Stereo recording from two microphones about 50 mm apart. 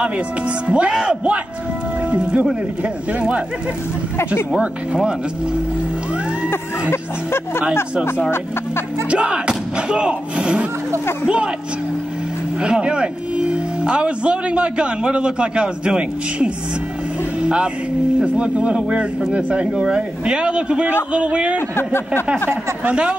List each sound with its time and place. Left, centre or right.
0.7 s speech: right
6.5 s speech: left
9.1 s speech: right
12.6 s speech: centre
17.4 s music: centre
18.2 s speech: right
21.5 s speech: left